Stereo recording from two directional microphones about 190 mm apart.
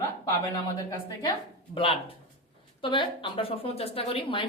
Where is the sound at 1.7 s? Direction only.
30° left (ahead or behind).